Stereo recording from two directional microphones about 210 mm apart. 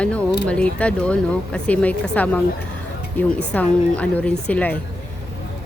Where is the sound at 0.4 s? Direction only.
5° left (ahead or behind).